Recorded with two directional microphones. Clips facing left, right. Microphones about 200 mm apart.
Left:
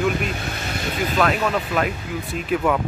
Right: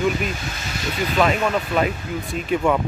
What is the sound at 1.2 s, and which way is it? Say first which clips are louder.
Speech: right 2 dB; centre (ahead or behind).